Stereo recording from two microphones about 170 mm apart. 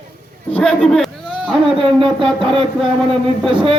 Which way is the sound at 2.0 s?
30° right (ahead or behind).